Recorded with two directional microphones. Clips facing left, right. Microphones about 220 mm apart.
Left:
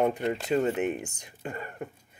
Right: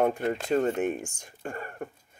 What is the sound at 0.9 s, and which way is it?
Speech, 20° left (ahead or behind).